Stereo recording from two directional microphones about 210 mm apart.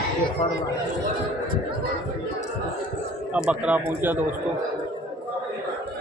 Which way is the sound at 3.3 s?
5° right (ahead or behind).